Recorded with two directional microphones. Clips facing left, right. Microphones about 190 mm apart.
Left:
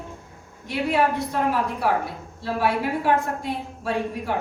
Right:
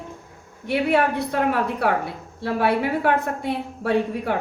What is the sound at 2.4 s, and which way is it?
A woman's voice, 65° right (ahead or behind).